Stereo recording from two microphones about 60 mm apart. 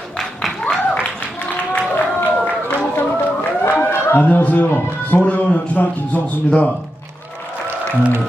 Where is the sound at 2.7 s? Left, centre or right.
Left.